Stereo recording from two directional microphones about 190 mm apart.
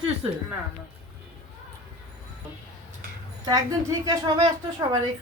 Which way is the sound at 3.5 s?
20° right (ahead or behind).